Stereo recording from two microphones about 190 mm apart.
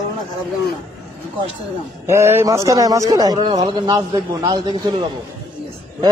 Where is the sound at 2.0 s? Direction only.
15° right (ahead or behind).